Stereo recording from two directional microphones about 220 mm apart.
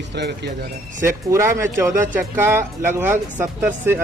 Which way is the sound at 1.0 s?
10° right (ahead or behind).